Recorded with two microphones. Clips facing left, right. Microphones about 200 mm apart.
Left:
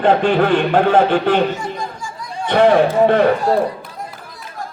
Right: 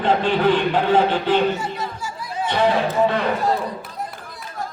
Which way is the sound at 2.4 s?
55° left (ahead or behind).